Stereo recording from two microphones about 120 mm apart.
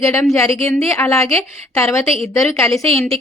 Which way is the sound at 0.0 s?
20° left (ahead or behind).